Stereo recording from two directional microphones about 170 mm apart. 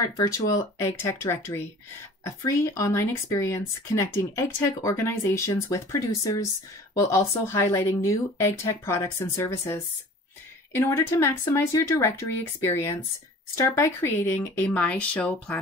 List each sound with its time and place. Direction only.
0.0 s speech: 20° left (ahead or behind)